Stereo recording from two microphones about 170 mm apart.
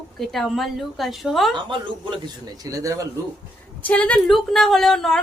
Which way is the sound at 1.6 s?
30° right (ahead or behind).